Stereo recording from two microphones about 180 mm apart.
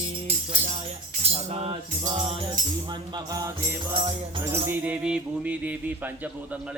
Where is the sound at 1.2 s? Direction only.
35° right (ahead or behind).